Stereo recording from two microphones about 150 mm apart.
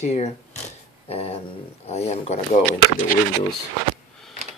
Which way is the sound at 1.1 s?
40° left (ahead or behind).